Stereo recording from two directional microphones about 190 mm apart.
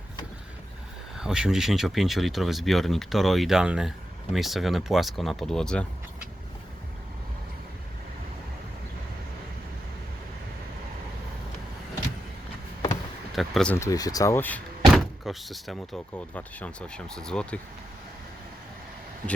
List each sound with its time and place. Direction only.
1.2 s speech: 5° right (ahead or behind)
13.3 s speech: centre (ahead or behind)
13.7 s speech: 15° left (ahead or behind)
14.8 s speech: centre (ahead or behind)